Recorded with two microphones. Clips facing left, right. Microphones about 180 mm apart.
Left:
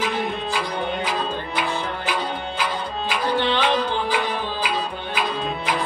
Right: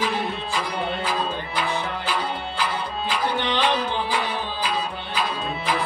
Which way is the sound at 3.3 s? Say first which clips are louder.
Left 3 dB; 15° right (ahead or behind).